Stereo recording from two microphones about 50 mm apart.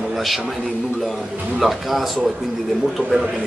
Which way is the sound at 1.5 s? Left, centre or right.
Centre.